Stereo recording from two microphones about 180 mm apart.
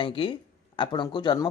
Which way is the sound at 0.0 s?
30° left (ahead or behind).